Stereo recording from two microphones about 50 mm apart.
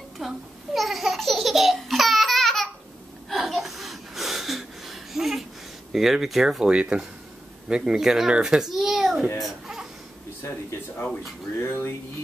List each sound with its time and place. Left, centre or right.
0.2 s laughter: centre
3.3 s gasp: centre
5.9 s a child's voice: centre
9.4 s baby cry: centre
11.6 s a sound: left